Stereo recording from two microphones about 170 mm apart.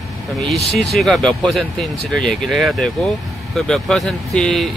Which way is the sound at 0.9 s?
Centre (ahead or behind).